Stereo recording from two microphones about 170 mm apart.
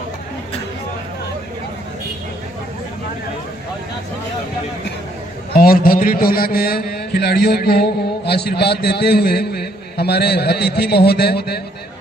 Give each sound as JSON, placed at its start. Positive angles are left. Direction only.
{"t": 5.5, "sound": "a man's voice", "side_deg": 60}